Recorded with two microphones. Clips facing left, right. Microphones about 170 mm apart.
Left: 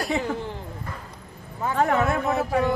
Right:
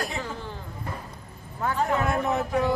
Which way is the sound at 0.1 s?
65° left (ahead or behind).